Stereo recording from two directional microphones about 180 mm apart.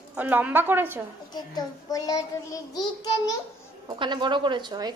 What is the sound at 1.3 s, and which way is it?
Speech, 20° left (ahead or behind).